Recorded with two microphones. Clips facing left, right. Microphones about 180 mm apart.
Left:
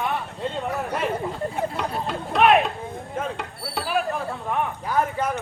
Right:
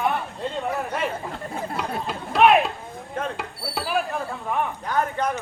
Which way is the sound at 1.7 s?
Centre (ahead or behind).